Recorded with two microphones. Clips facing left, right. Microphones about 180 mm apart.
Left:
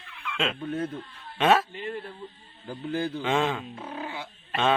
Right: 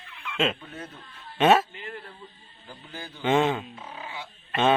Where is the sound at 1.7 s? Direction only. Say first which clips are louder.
Left 6 dB; 30° left (ahead or behind).